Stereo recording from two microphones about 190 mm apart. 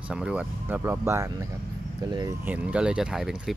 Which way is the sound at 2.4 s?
5° right (ahead or behind).